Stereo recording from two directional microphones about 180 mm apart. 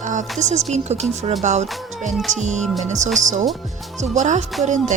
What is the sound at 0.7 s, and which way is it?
Speech, 40° right (ahead or behind).